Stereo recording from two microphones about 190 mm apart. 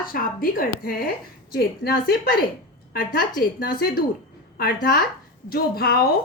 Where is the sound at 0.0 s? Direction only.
50° left (ahead or behind).